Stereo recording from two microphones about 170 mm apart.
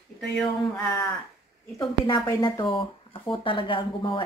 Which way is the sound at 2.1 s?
25° left (ahead or behind).